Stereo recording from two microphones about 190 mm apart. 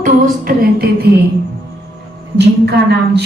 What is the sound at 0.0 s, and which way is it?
Music, 50° right (ahead or behind).